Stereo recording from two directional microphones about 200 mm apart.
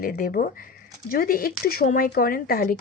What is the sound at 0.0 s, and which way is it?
Speech, 50° left (ahead or behind).